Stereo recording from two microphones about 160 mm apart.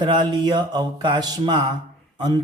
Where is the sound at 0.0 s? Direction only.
30° right (ahead or behind).